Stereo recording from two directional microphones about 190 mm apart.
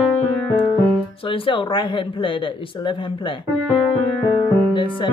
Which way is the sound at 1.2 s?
25° left (ahead or behind).